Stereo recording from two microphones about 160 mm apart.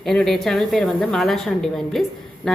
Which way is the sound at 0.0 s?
Centre (ahead or behind).